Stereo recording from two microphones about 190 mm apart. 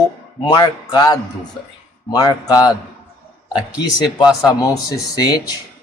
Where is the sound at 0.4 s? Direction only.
20° left (ahead or behind).